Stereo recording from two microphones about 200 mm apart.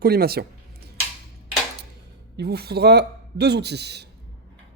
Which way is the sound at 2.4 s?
55° right (ahead or behind).